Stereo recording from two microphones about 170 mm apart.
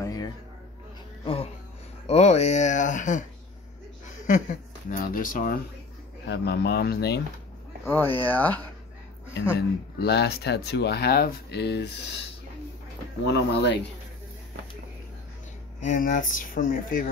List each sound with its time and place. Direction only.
0.0 s a sound: 20° left (ahead or behind)
1.2 s music: 35° left (ahead or behind)
2.0 s speech: 40° left (ahead or behind)
4.8 s speech: 55° left (ahead or behind)
6.2 s speech: 85° left
7.8 s speech: 15° left (ahead or behind)
9.9 s speech: 75° left (ahead or behind)
13.2 s speech: 80° left
15.8 s speech: 50° left (ahead or behind)